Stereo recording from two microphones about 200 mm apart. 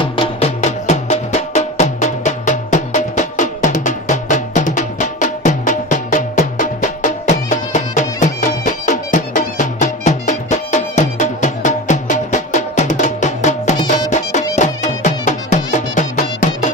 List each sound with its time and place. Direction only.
0.0 s music: 25° left (ahead or behind)